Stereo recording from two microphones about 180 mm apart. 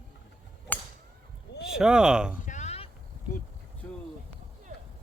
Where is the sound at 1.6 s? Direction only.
5° right (ahead or behind).